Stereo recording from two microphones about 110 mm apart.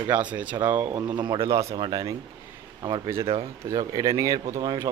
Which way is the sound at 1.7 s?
40° right (ahead or behind).